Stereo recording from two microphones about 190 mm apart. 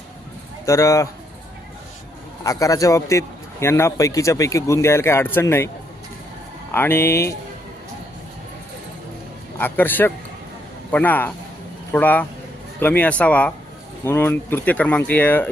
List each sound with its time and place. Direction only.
0.6 s speech: 15° left (ahead or behind)
2.4 s a man's voice: 15° left (ahead or behind)
9.6 s a man's voice: 10° left (ahead or behind)